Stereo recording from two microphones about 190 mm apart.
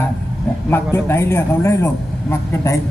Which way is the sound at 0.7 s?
10° left (ahead or behind).